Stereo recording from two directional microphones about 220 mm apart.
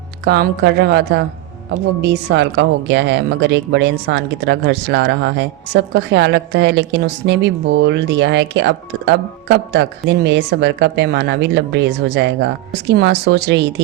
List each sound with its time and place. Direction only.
0.3 s speech: 50° right (ahead or behind)